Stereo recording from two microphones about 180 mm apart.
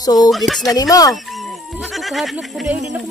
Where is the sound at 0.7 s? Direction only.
20° left (ahead or behind).